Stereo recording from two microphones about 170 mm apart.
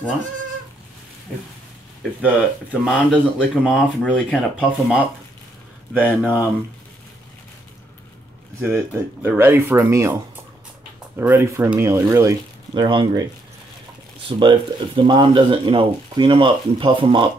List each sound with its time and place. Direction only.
2.2 s speech: 5° right (ahead or behind)
3.3 s speech: 5° left (ahead or behind)
8.5 s speech: 15° right (ahead or behind)
14.4 s speech: 30° right (ahead or behind)